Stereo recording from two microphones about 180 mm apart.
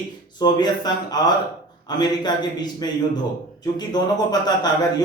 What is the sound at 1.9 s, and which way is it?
A man's voice, 25° left (ahead or behind).